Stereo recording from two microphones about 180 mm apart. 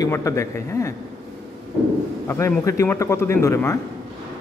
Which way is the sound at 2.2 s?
15° left (ahead or behind).